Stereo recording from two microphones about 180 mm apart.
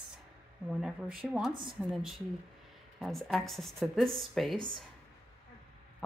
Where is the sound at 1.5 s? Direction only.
25° right (ahead or behind).